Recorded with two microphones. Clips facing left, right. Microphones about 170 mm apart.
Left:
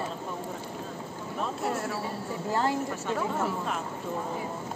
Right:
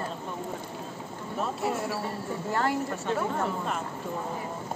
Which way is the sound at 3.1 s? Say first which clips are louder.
Left 1 dB; centre (ahead or behind).